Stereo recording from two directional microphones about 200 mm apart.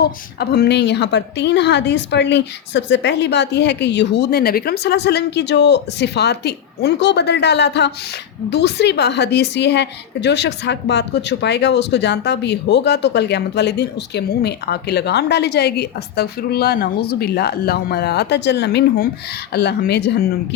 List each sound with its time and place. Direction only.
0.0 s a woman's voice: 50° left (ahead or behind)